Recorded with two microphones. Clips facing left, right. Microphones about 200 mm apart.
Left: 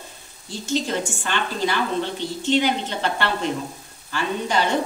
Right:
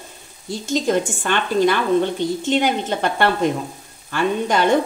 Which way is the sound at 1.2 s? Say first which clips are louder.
Right 10 dB; 55° right (ahead or behind).